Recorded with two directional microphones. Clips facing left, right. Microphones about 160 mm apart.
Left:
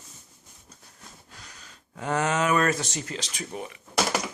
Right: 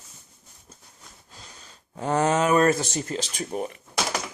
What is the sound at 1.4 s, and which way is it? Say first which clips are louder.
Speech: right 1 dB; 30° right (ahead or behind).